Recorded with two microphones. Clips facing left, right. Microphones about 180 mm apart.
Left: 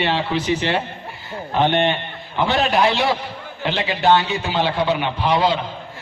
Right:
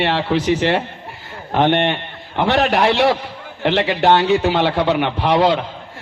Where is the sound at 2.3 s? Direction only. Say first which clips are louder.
Right 2 dB; 65° right (ahead or behind).